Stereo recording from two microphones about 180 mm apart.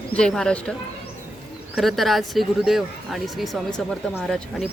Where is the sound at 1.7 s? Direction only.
Centre (ahead or behind).